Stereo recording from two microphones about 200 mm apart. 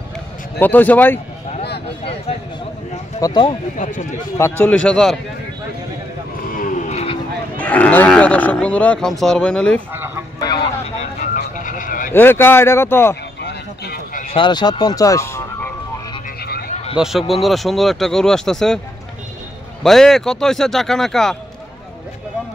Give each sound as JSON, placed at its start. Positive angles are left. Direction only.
{"t": 0.6, "sound": "speech", "side_deg": 10}
{"t": 3.2, "sound": "speech", "side_deg": 20}
{"t": 3.8, "sound": "a man's voice", "side_deg": 40}
{"t": 4.4, "sound": "speech", "side_deg": 10}
{"t": 6.5, "sound": "vehicle", "side_deg": 40}
{"t": 7.6, "sound": "speech", "side_deg": 5}
{"t": 9.9, "sound": "a sound", "side_deg": -10}
{"t": 11.4, "sound": "vehicle", "side_deg": 40}
{"t": 12.1, "sound": "speech", "side_deg": 10}
{"t": 13.4, "sound": "a sound", "side_deg": 55}
{"t": 14.3, "sound": "vehicle", "side_deg": 20}
{"t": 16.4, "sound": "vehicle", "side_deg": 50}
{"t": 16.9, "sound": "speech", "side_deg": -5}
{"t": 19.8, "sound": "speech", "side_deg": 0}